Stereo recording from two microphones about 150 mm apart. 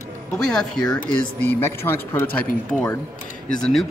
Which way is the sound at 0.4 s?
5° left (ahead or behind).